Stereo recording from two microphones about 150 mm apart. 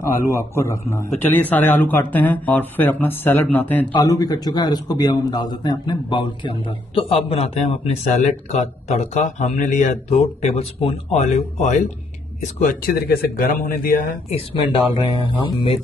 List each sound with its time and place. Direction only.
0.0 s a man's voice: 15° left (ahead or behind)
4.0 s a man's voice: 25° left (ahead or behind); by 14.0 s 65° left (ahead or behind)
14.3 s speech: 35° left (ahead or behind)